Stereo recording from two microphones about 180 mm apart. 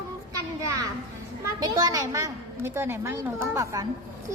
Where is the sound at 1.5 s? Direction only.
20° right (ahead or behind).